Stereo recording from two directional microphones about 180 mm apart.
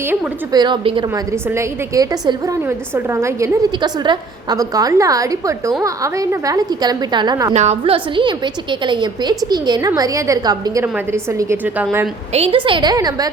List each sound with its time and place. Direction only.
0.5 s a woman's voice: 25° right (ahead or behind)
7.5 s a woman's voice: 40° right (ahead or behind); by 12.0 s 10° right (ahead or behind)
12.3 s a woman's voice: 30° right (ahead or behind)